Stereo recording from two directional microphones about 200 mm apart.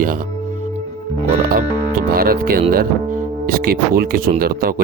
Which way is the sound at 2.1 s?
50° right (ahead or behind).